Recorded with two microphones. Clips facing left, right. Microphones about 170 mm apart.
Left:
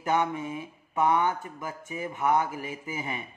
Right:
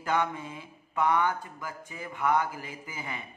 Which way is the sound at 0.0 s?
20° left (ahead or behind).